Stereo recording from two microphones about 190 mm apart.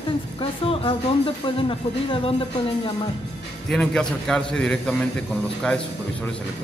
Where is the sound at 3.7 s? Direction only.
Centre (ahead or behind).